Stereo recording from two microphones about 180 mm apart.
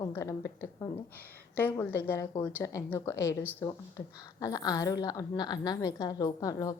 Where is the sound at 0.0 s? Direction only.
15° left (ahead or behind).